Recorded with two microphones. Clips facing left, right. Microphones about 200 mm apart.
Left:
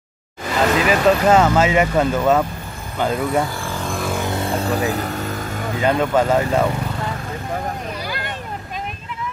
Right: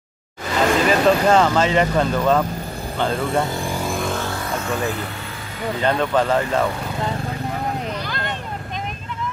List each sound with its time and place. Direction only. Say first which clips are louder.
0.8 s speech: left 1 dB; 5° left (ahead or behind)
3.4 s vehicle: right 2 dB; 20° right (ahead or behind)
3.9 s music: left 3 dB; centre (ahead or behind)
4.2 s vehicle: left 4 dB; 20° left (ahead or behind); by 5.7 s 45° left (ahead or behind)
5.8 s speech: left 2 dB; 10° left (ahead or behind)
8.0 s vehicle: even; 10° left (ahead or behind)